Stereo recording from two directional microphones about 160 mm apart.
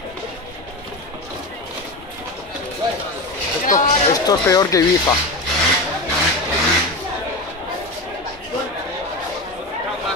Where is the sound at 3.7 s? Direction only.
55° left (ahead or behind).